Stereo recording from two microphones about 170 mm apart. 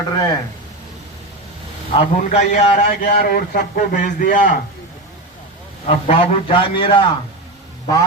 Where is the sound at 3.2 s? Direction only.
60° left (ahead or behind).